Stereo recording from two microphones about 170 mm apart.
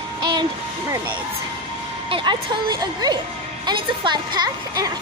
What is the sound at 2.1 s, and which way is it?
Speech, 25° right (ahead or behind).